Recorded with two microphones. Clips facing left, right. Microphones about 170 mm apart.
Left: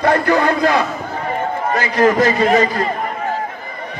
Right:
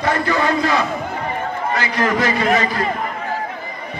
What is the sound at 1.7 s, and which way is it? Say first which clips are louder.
Speech: left 6 dB; 45° left (ahead or behind).